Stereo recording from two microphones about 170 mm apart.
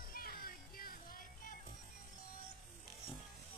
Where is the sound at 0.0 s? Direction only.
60° left (ahead or behind).